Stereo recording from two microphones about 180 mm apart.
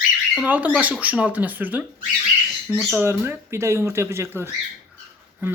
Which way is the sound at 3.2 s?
15° right (ahead or behind).